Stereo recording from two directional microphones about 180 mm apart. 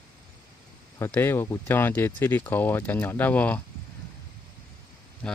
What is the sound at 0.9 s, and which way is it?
Speech, 15° left (ahead or behind).